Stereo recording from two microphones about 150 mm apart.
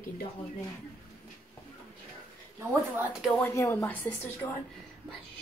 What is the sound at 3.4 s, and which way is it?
A woman's voice, 15° left (ahead or behind).